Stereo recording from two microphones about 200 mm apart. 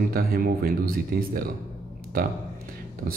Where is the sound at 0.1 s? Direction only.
50° right (ahead or behind).